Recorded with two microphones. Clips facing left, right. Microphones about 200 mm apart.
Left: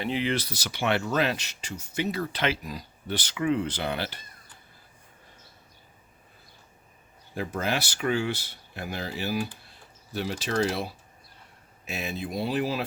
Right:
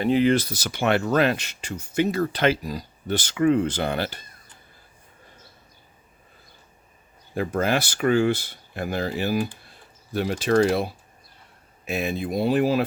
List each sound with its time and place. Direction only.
0.0 s speech: 45° right (ahead or behind)
7.3 s speech: 55° right (ahead or behind)
11.9 s speech: 55° right (ahead or behind)